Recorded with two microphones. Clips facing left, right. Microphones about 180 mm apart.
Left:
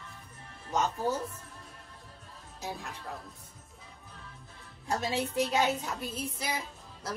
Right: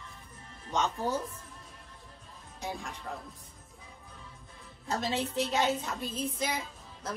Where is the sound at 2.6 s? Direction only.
5° left (ahead or behind).